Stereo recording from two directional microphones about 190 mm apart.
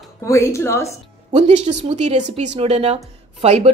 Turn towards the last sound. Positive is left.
turn(degrees=-35)  # may be behind; listen again after turning